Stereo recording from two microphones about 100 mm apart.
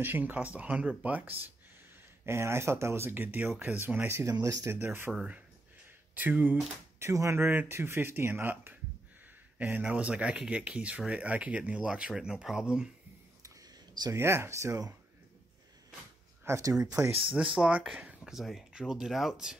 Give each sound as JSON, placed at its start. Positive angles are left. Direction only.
{"t": 0.0, "sound": "speech", "side_deg": -20}
{"t": 4.7, "sound": "speech", "side_deg": -20}
{"t": 6.1, "sound": "speech", "side_deg": -15}
{"t": 7.0, "sound": "speech", "side_deg": -30}
{"t": 14.1, "sound": "speech", "side_deg": -25}
{"t": 16.4, "sound": "speech", "side_deg": -30}
{"t": 17.6, "sound": "speech", "side_deg": -10}